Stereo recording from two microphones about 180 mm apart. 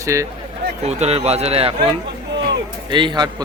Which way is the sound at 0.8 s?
35° right (ahead or behind).